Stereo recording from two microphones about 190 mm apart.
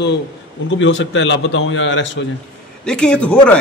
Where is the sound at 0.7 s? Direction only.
80° left.